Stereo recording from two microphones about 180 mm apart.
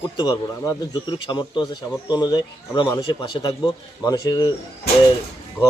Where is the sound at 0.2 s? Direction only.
20° left (ahead or behind).